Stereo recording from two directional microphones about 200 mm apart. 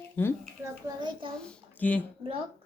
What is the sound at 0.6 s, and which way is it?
Speech, 25° right (ahead or behind).